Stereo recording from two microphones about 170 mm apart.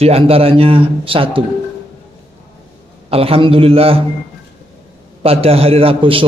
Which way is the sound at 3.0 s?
35° right (ahead or behind).